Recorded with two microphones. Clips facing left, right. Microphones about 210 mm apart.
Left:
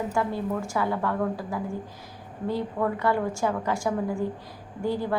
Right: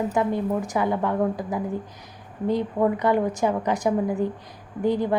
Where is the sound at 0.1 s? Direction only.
20° right (ahead or behind).